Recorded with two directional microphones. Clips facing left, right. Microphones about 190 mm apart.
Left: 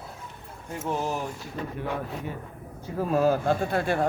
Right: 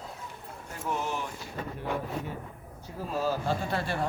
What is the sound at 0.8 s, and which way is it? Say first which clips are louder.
Speech: left 3 dB; 35° left (ahead or behind).